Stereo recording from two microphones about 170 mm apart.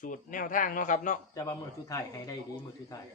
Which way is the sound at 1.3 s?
20° left (ahead or behind).